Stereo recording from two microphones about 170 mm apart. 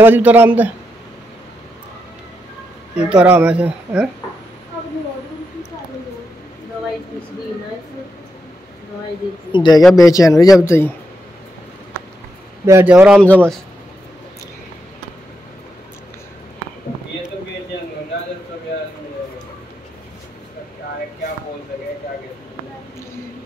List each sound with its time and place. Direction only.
0.0 s speech: 10° right (ahead or behind)
3.0 s speech: 5° right (ahead or behind)
9.5 s speech: 25° left (ahead or behind)
12.8 s speech: 10° right (ahead or behind)
13.2 s speech: 5° left (ahead or behind)